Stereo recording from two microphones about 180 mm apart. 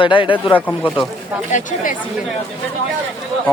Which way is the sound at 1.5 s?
50° left (ahead or behind).